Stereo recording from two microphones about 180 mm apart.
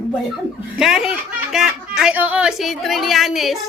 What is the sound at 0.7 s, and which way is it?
Speech, 5° right (ahead or behind).